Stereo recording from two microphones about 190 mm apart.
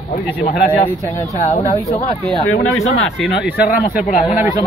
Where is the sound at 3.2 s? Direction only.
60° left (ahead or behind).